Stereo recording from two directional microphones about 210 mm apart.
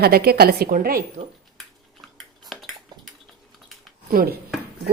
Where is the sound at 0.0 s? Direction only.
50° right (ahead or behind).